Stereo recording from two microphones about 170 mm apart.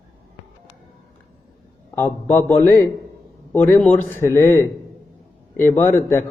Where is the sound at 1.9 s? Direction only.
15° left (ahead or behind).